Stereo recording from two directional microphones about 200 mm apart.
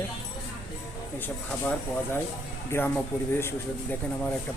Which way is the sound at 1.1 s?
10° left (ahead or behind).